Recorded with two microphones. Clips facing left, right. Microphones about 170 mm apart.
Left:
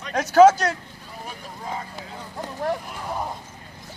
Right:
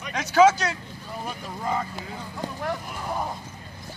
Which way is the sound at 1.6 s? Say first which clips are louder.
Right 5 dB; 65° right (ahead or behind).